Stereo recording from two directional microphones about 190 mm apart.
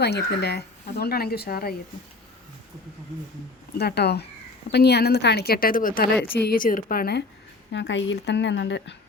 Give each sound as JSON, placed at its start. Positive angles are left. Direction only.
{"t": 0.0, "sound": "a woman's voice", "side_deg": 60}
{"t": 3.8, "sound": "a woman's voice", "side_deg": 60}
{"t": 6.1, "sound": "a woman's voice", "side_deg": 10}
{"t": 6.4, "sound": "speech", "side_deg": 50}
{"t": 7.7, "sound": "speech", "side_deg": 70}